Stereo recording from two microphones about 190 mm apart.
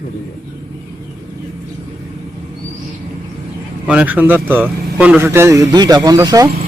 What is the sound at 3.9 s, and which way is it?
Speech, 5° right (ahead or behind).